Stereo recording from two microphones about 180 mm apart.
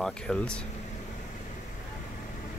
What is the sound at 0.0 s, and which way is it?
Speech, 5° left (ahead or behind).